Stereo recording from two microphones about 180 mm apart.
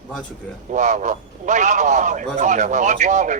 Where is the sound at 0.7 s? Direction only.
45° right (ahead or behind).